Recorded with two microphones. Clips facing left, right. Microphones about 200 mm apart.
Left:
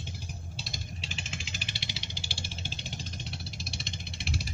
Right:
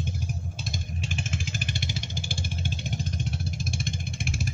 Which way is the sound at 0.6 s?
50° right (ahead or behind).